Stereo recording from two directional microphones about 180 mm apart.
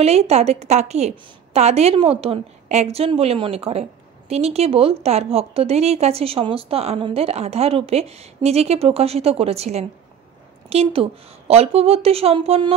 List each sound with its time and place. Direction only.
0.0 s a woman's voice: 35° right (ahead or behind)